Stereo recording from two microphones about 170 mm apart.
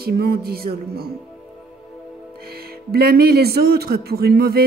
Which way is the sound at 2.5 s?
65° right (ahead or behind).